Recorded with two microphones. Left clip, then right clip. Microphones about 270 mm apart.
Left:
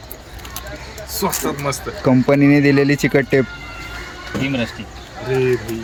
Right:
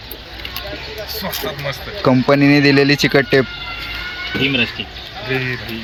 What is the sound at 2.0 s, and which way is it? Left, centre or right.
Speech, centre.